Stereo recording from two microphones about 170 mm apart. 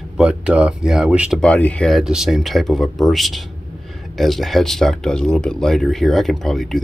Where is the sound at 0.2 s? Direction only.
5° right (ahead or behind).